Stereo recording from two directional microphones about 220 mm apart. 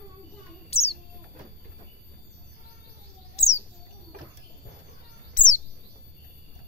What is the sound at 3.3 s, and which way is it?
Bird, 30° left (ahead or behind).